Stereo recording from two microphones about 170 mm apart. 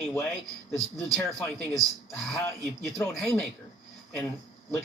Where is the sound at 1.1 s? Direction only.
5° left (ahead or behind).